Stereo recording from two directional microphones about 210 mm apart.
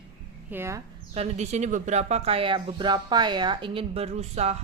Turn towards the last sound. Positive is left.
turn(degrees=-30)  # may be behind; listen again after turning